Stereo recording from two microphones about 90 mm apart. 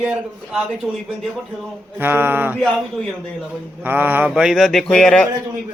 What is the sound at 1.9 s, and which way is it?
Speech, 20° right (ahead or behind).